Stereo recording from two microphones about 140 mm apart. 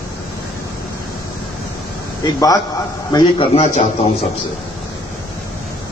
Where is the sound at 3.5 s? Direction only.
50° left (ahead or behind).